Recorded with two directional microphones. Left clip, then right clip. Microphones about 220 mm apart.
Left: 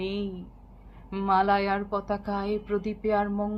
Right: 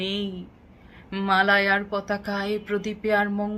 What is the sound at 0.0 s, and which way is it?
A woman's voice, 10° right (ahead or behind).